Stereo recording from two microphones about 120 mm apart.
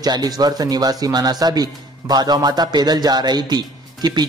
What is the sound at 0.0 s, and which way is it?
Speech, 30° right (ahead or behind).